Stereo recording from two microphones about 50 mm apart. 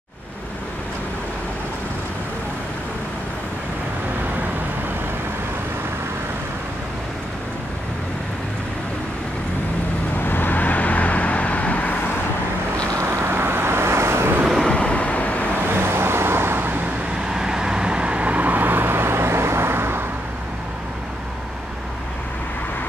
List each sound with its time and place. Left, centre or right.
10.1 s vehicle: left
13.0 s vehicle: right
14.7 s vehicle: left
15.6 s vehicle: right
17.3 s vehicle: centre; by 20.1 s right